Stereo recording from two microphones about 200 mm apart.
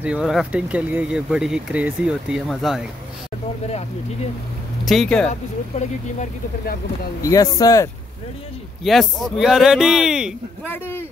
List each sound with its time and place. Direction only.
0.0 s speech: 5° right (ahead or behind)
4.8 s speech: centre (ahead or behind)
5.3 s speech: 35° left (ahead or behind)
7.2 s speech: 20° left (ahead or behind)
8.8 s speech: centre (ahead or behind)
10.7 s speech: 10° left (ahead or behind)